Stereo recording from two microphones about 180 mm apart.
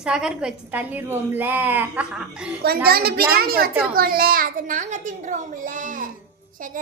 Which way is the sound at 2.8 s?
60° right (ahead or behind).